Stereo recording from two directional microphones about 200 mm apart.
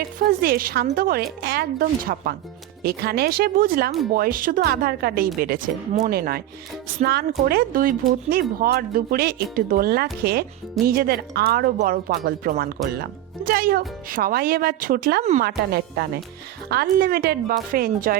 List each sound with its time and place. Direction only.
0.3 s speech: 45° right (ahead or behind)
15.2 s speech: 35° right (ahead or behind)
15.4 s speech: 50° right (ahead or behind)